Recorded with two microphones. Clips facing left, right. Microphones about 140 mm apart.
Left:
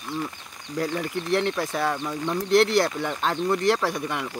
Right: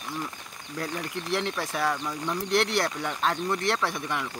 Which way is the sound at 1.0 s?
Centre (ahead or behind).